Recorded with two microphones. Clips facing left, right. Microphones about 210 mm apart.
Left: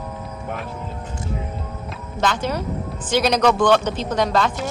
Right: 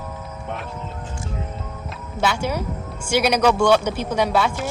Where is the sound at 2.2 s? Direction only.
10° right (ahead or behind).